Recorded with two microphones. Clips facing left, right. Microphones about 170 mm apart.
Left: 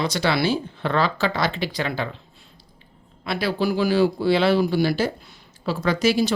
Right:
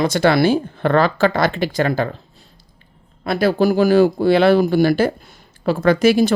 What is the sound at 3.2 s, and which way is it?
Speech, 45° right (ahead or behind).